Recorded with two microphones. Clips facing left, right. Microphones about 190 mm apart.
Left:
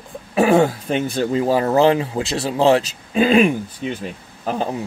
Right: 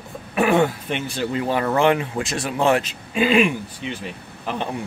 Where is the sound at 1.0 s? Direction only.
50° left (ahead or behind).